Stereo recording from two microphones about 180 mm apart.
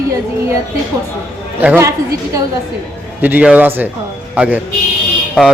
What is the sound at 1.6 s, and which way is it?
A man's voice, 15° right (ahead or behind).